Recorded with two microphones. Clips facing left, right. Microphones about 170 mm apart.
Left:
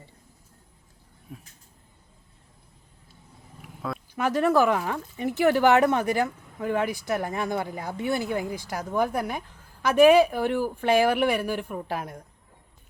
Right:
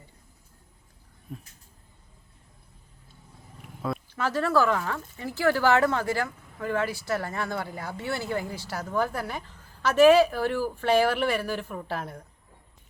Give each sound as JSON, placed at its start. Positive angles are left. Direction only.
{"t": 1.3, "sound": "speech", "side_deg": 5}
{"t": 3.6, "sound": "a sound", "side_deg": 0}
{"t": 4.1, "sound": "speech", "side_deg": 15}